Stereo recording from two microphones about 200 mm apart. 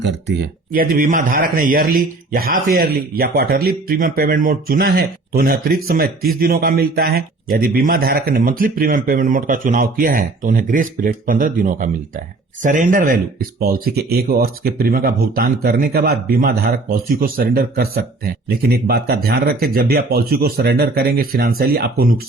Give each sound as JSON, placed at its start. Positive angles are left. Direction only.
{"t": 0.0, "sound": "speech", "side_deg": -55}